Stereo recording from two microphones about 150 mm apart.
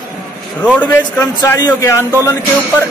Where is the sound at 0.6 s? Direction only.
15° left (ahead or behind).